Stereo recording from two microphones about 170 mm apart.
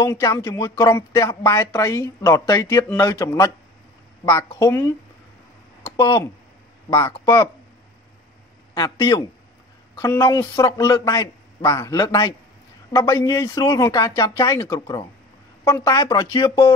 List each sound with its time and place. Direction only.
0.1 s a man's voice: 20° left (ahead or behind)
5.9 s a man's voice: 25° left (ahead or behind)
8.7 s a man's voice: 20° left (ahead or behind)